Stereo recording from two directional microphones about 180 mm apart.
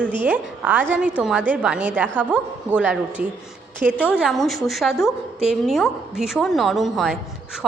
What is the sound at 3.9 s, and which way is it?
A woman's voice, 10° left (ahead or behind).